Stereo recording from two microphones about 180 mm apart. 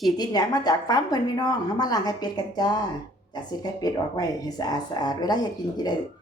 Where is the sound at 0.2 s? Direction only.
20° left (ahead or behind).